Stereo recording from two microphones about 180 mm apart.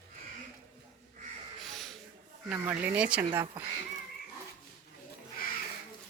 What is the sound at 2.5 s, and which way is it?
Speech, 10° right (ahead or behind).